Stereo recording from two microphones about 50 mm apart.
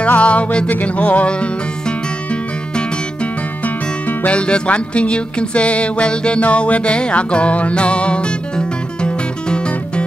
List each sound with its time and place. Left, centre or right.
0.0 s music: left
4.3 s music: left